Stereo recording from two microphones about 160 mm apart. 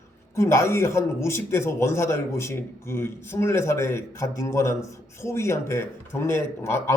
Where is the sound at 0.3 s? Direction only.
15° left (ahead or behind).